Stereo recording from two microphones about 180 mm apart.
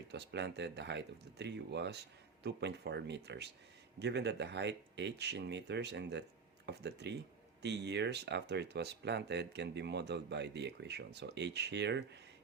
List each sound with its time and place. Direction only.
0.1 s speech: 70° right (ahead or behind)